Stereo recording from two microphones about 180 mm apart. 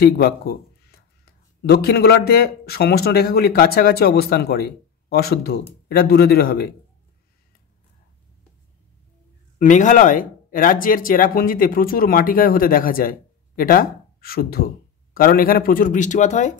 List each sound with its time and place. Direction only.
0.0 s a man's voice: 60° left (ahead or behind)
9.6 s speech: 45° left (ahead or behind)